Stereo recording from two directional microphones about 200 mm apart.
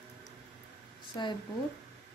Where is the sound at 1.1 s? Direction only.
25° left (ahead or behind).